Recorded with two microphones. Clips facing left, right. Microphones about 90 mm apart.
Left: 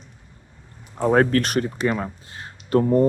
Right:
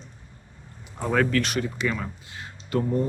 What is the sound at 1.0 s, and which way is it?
Speech, 35° left (ahead or behind).